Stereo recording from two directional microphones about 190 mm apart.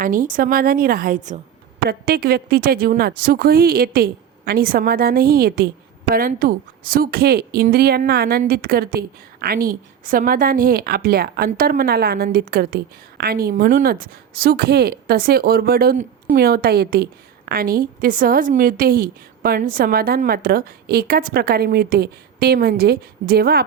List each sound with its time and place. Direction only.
0.0 s speech: 45° right (ahead or behind)
1.9 s speech: 55° right (ahead or behind)